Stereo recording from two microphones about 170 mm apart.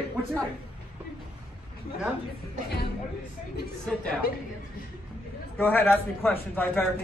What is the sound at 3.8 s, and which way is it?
Speech, 5° left (ahead or behind).